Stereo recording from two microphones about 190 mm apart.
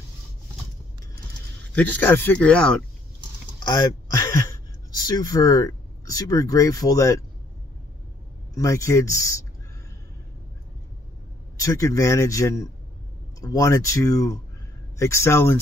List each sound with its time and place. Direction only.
1.8 s speech: 10° left (ahead or behind)
3.5 s speech: 20° left (ahead or behind)
8.5 s speech: 15° left (ahead or behind)
11.6 s speech: 15° left (ahead or behind)